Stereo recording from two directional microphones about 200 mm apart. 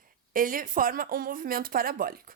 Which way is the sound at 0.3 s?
45° right (ahead or behind).